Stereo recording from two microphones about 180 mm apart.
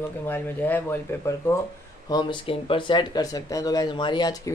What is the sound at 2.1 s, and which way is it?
Speech, 25° left (ahead or behind).